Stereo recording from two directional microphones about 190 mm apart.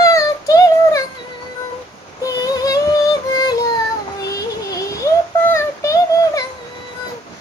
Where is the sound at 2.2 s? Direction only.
20° left (ahead or behind).